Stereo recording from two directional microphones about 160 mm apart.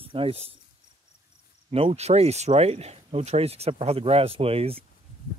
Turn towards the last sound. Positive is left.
turn(degrees=-35)  # may be behind; listen again after turning